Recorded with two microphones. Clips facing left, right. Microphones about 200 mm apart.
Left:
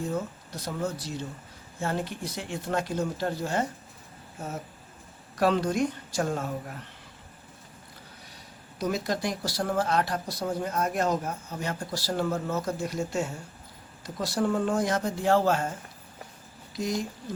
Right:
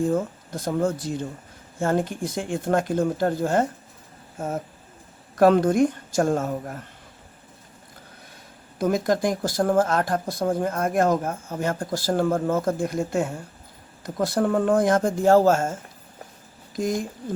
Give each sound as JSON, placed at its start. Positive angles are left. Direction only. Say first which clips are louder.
{"t": 0.0, "sound": "speech", "louder": "right 8 dB", "side_deg": -50}
{"t": 8.8, "sound": "speech", "louder": "right 7 dB", "side_deg": -50}